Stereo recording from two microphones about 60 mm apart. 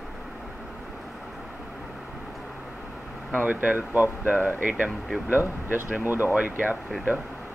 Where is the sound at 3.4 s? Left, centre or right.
Right.